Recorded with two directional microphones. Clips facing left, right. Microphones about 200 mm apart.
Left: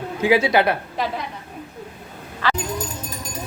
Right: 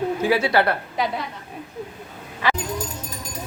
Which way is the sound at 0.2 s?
15° left (ahead or behind).